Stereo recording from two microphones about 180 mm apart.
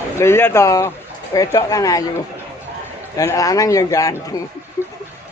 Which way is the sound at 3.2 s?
20° left (ahead or behind).